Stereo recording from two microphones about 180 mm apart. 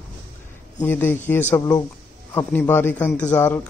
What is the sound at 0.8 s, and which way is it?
A man's voice, 10° left (ahead or behind).